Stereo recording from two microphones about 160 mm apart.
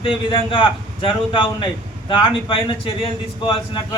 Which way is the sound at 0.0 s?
30° left (ahead or behind).